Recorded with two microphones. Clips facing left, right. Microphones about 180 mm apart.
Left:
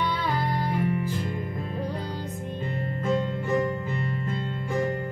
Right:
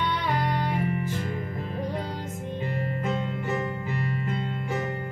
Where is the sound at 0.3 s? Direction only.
65° right (ahead or behind).